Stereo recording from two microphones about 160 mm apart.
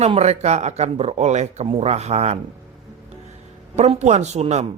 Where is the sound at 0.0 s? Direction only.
45° right (ahead or behind).